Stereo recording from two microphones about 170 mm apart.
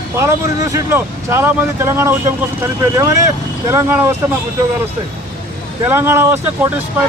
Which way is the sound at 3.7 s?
15° right (ahead or behind).